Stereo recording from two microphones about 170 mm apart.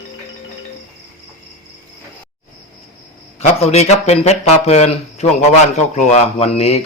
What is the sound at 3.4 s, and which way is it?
A man's voice, 40° left (ahead or behind).